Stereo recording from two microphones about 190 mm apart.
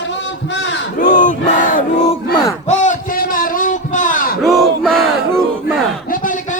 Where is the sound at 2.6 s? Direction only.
40° left (ahead or behind).